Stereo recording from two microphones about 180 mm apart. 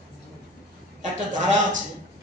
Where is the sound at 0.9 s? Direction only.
45° right (ahead or behind).